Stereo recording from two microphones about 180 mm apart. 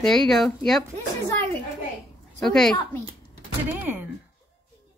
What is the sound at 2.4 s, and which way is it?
Speech, 5° left (ahead or behind).